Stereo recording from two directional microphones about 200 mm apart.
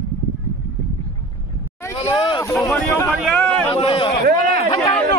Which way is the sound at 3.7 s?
25° left (ahead or behind).